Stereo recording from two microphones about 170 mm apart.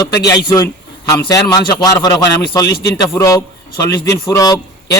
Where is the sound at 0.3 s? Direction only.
20° left (ahead or behind).